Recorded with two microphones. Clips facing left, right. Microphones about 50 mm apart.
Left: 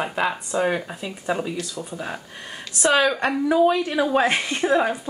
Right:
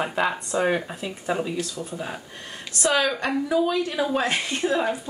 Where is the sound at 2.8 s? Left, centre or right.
Left.